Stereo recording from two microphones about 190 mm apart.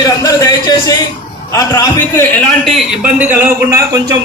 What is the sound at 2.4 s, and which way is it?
A man's voice, centre (ahead or behind).